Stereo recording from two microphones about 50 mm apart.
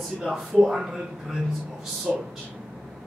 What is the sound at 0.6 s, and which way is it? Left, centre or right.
Speech, centre.